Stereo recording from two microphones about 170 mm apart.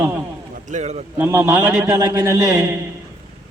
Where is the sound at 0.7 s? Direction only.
40° right (ahead or behind).